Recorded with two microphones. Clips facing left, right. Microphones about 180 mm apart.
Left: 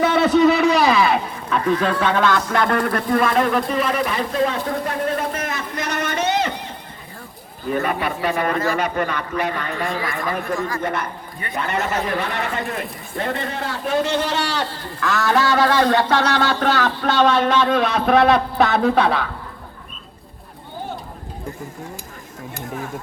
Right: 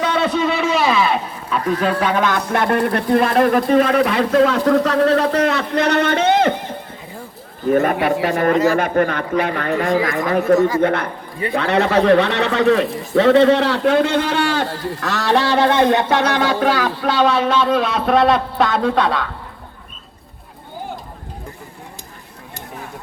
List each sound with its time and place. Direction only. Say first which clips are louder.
0.1 s a sound: left 4 dB; centre (ahead or behind)
2.6 s speech: right 2 dB; 25° right (ahead or behind)
3.2 s speech: right 4 dB; 40° right (ahead or behind)
7.7 s a man's voice: right 7 dB; 45° right (ahead or behind)
10.8 s speech: right 7 dB; 60° right (ahead or behind)
11.5 s a man's voice: right 7 dB; 70° right (ahead or behind); by 19.3 s 5° left (ahead or behind)